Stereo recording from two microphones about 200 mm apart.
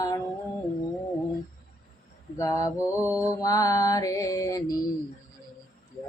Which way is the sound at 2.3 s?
15° left (ahead or behind).